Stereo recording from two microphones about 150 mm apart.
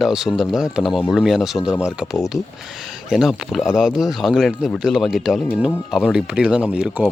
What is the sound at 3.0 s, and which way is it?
Speech, centre (ahead or behind).